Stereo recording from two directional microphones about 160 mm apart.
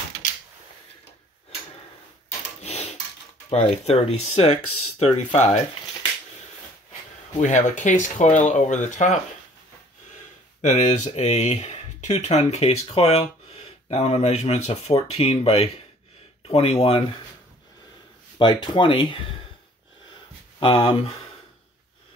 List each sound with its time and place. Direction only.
2.6 s a sound: 45° left (ahead or behind)
3.4 s speech: 40° left (ahead or behind)
7.3 s speech: 45° left (ahead or behind)
10.6 s speech: 45° left (ahead or behind)
18.4 s speech: 30° left (ahead or behind)
20.6 s speech: 30° left (ahead or behind)